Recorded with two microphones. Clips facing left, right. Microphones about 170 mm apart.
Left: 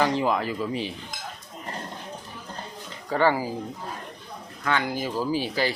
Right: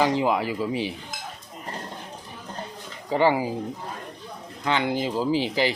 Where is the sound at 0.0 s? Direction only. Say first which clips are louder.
Right 1 dB; 15° right (ahead or behind).